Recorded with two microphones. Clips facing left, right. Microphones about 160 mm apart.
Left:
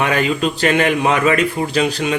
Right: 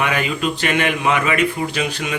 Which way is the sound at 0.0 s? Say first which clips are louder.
Left 3 dB; 35° left (ahead or behind).